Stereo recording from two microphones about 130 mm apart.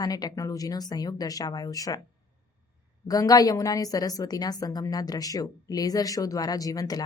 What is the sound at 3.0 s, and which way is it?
A woman's voice, 30° left (ahead or behind).